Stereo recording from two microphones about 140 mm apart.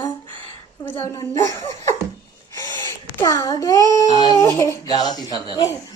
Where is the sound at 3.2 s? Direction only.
20° left (ahead or behind).